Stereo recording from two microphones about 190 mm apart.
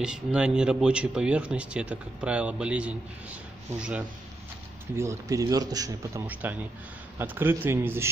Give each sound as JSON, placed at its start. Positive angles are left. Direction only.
{"t": 0.0, "sound": "speech", "side_deg": -5}
{"t": 4.9, "sound": "a man's voice", "side_deg": -15}
{"t": 6.2, "sound": "a man's voice", "side_deg": -10}